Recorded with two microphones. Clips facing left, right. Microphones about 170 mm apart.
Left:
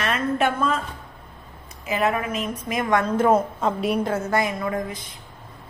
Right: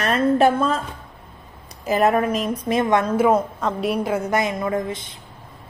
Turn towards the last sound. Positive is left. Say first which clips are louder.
# right 3 dB
turn(degrees=-25)  # may be behind; listen again after turning